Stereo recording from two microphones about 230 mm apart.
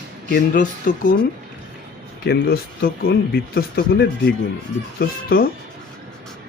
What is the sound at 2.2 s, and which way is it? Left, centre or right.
Speech, left.